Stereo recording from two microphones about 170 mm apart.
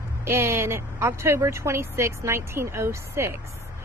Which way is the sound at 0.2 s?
15° right (ahead or behind).